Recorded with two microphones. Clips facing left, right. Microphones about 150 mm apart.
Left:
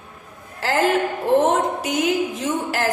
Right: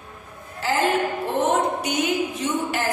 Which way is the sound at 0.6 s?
90° left.